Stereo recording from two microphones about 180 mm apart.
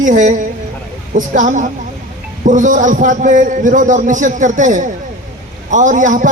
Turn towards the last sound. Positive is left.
turn(degrees=-45)  # may be behind; listen again after turning